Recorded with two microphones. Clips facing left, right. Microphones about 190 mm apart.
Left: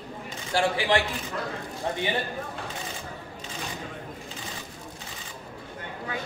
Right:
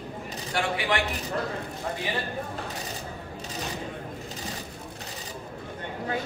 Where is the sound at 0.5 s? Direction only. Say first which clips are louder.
Left 4 dB; 30° left (ahead or behind).